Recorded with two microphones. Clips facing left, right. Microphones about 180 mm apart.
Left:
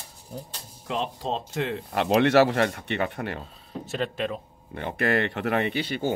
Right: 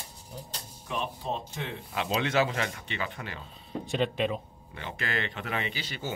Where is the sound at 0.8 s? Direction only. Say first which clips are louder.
Left 5 dB; 90° left; by 3.4 s 60° left (ahead or behind).